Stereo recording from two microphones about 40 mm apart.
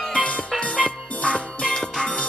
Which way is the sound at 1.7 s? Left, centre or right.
Centre.